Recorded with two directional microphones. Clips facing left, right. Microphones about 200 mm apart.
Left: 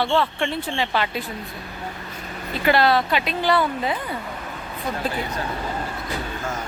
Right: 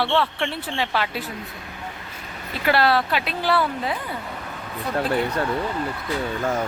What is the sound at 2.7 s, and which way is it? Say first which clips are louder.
Speech: left 1 dB; 5° right (ahead or behind).